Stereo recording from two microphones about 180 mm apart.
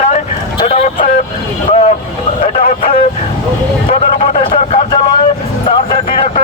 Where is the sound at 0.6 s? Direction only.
35° left (ahead or behind).